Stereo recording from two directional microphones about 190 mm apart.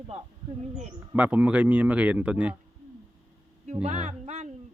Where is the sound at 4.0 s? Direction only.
35° right (ahead or behind).